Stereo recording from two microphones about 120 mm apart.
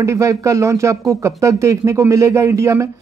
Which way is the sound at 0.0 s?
25° right (ahead or behind).